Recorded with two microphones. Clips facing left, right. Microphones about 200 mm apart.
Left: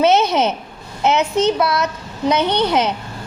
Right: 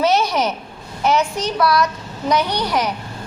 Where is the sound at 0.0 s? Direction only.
20° left (ahead or behind).